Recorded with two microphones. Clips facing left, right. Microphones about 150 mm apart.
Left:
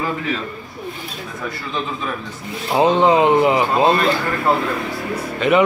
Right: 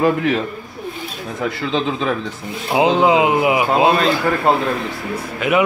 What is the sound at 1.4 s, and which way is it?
Speech, 85° right.